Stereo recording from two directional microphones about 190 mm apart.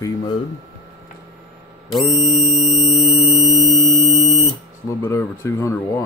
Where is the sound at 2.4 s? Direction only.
35° left (ahead or behind).